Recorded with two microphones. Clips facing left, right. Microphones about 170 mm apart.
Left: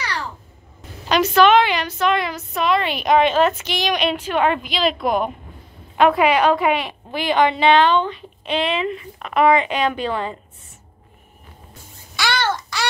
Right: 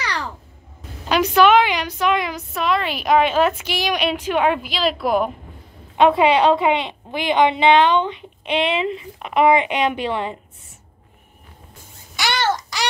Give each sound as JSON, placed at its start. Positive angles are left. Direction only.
{"t": 1.0, "sound": "a woman's voice", "side_deg": -10}
{"t": 5.9, "sound": "a woman's voice", "side_deg": -25}
{"t": 12.2, "sound": "babbling", "side_deg": -20}